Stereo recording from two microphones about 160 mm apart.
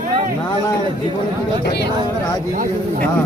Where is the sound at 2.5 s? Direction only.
60° right (ahead or behind).